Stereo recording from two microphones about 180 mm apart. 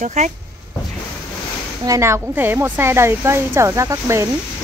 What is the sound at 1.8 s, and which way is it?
Speech, 15° right (ahead or behind).